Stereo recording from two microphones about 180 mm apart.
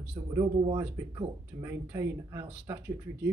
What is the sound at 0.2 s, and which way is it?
Speech, 15° right (ahead or behind).